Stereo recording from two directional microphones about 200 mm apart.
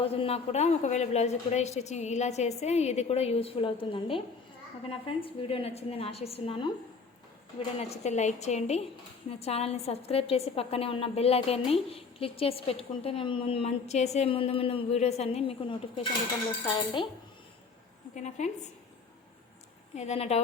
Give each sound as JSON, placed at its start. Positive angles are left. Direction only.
{"t": 0.0, "sound": "a woman's voice", "side_deg": 30}
{"t": 7.8, "sound": "a woman's voice", "side_deg": 35}
{"t": 18.1, "sound": "a woman's voice", "side_deg": 35}
{"t": 20.0, "sound": "a woman's voice", "side_deg": 30}